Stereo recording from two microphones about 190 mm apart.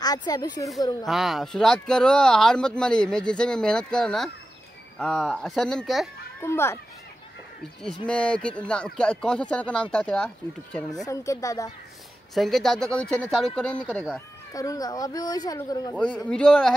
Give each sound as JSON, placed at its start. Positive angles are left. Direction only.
{"t": 0.0, "sound": "speech", "side_deg": 20}
{"t": 1.0, "sound": "speech", "side_deg": 0}
{"t": 6.4, "sound": "speech", "side_deg": 15}
{"t": 8.1, "sound": "speech", "side_deg": 5}
{"t": 11.1, "sound": "speech", "side_deg": 15}
{"t": 12.4, "sound": "speech", "side_deg": 0}
{"t": 14.5, "sound": "speech", "side_deg": 20}
{"t": 15.9, "sound": "speech", "side_deg": 5}